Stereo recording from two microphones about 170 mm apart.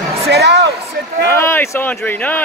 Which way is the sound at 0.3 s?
80° right.